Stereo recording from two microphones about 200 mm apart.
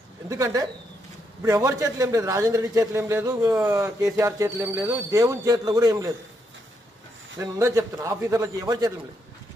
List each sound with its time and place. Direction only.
0.3 s a man's voice: 15° right (ahead or behind)
7.3 s a man's voice: 15° right (ahead or behind)